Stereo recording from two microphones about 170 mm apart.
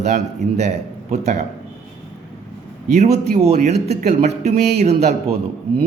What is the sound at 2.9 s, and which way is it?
A man's voice, 40° right (ahead or behind).